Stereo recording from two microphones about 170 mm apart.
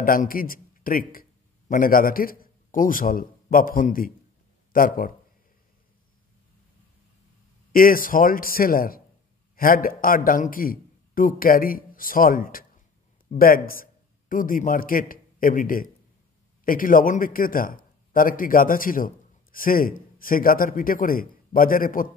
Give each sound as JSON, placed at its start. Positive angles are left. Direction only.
{"t": 0.0, "sound": "a man's voice", "side_deg": 55}
{"t": 7.7, "sound": "a man's voice", "side_deg": 55}